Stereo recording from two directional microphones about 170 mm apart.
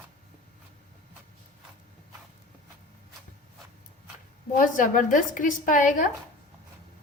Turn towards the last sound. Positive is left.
turn(degrees=50)  # may be behind; listen again after turning